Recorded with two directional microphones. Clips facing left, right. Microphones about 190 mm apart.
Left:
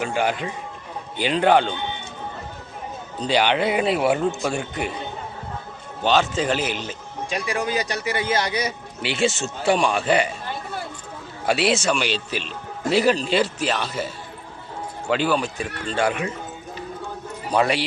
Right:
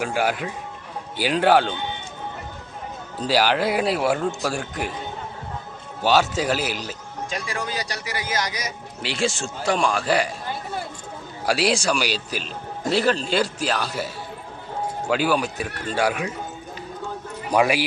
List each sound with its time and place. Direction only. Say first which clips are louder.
0.0 s a man's voice: even; 5° right (ahead or behind)
3.2 s a man's voice: even; 5° right (ahead or behind)
6.0 s a man's voice: even; 5° right (ahead or behind)
7.3 s a man's voice: left 5 dB; 20° left (ahead or behind)
9.0 s a man's voice: left 2 dB; 5° left (ahead or behind)
11.4 s a man's voice: left 1 dB; centre (ahead or behind)
15.1 s a man's voice: left 1 dB; 5° right (ahead or behind)
17.5 s a man's voice: right 1 dB; 10° right (ahead or behind)